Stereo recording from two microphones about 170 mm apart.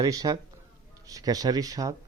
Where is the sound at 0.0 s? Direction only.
20° right (ahead or behind).